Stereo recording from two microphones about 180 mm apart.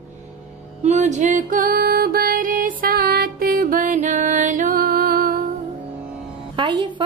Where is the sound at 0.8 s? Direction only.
40° right (ahead or behind); by 5.4 s 55° right (ahead or behind).